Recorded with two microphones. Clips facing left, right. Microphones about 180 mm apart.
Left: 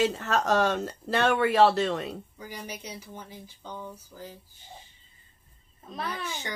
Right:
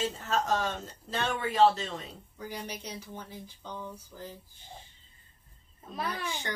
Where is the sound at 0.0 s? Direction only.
70° left (ahead or behind).